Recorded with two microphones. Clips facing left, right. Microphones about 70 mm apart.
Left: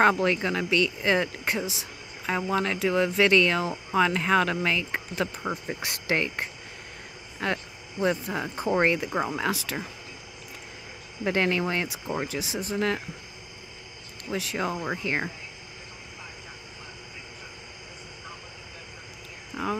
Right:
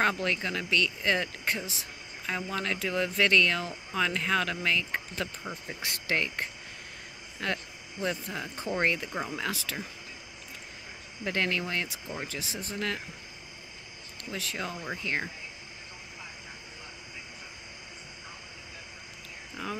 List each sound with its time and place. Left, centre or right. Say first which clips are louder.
0.2 s speech: left 6 dB; centre
1.7 s a sound: left 4 dB; centre
2.5 s speech: left 7 dB; centre
5.4 s speech: left 7 dB; left
5.9 s speech: left 3 dB; left
9.1 s speech: left 6 dB; left
9.4 s speech: left 5 dB; left
11.2 s speech: left 5 dB; left
14.3 s speech: left 7 dB; centre
19.6 s speech: left 7 dB; centre